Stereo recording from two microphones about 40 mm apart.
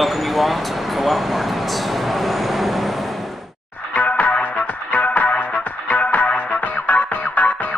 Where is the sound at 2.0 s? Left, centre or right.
Centre.